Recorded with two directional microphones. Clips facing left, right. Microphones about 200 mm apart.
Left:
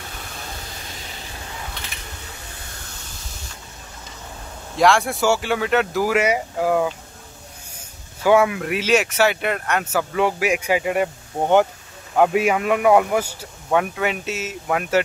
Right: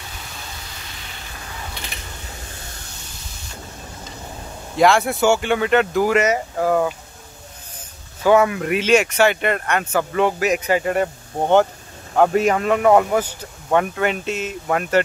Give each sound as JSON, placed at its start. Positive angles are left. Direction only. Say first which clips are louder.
{"t": 4.7, "sound": "speech", "louder": "right 2 dB", "side_deg": 0}
{"t": 8.2, "sound": "a man's voice", "louder": "right 1 dB", "side_deg": 10}